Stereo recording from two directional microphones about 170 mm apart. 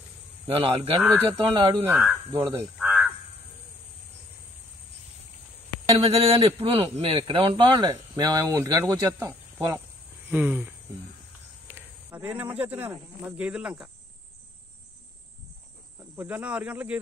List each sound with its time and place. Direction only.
0.5 s speech: 35° right (ahead or behind)
1.9 s speech: 10° right (ahead or behind)
5.9 s a man's voice: 35° right (ahead or behind); by 13.8 s 5° right (ahead or behind)
16.2 s speech: 10° right (ahead or behind)